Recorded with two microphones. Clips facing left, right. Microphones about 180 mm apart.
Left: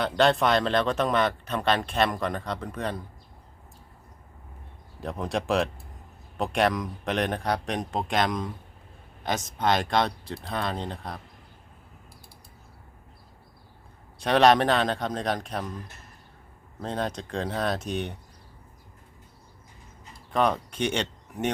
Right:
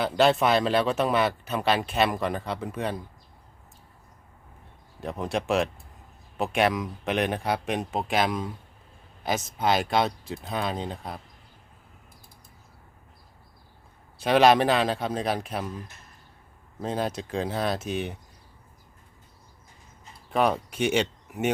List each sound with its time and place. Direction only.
0.0 s speech: 5° right (ahead or behind)
4.9 s speech: centre (ahead or behind)
14.2 s speech: 5° right (ahead or behind)
16.8 s speech: 5° right (ahead or behind)
20.3 s speech: 5° right (ahead or behind)